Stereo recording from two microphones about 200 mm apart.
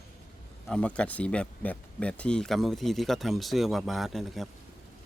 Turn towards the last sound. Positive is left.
turn(degrees=0)  # may be behind; listen again after turning